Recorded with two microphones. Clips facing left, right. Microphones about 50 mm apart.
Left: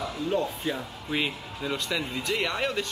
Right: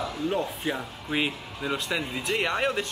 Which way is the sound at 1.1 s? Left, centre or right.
Centre.